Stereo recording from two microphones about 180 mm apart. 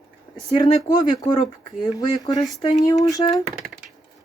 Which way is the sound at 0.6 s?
20° left (ahead or behind).